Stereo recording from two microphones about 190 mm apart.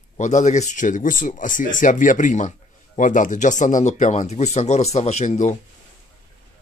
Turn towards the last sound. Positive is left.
turn(degrees=40)  # may be behind; listen again after turning